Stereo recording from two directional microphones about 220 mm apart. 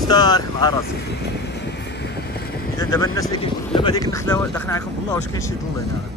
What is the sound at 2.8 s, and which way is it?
Speech, 15° left (ahead or behind).